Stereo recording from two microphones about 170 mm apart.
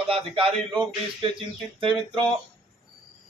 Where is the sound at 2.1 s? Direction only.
30° right (ahead or behind).